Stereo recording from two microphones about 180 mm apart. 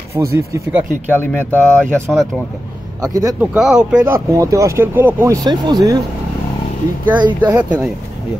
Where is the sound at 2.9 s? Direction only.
20° right (ahead or behind).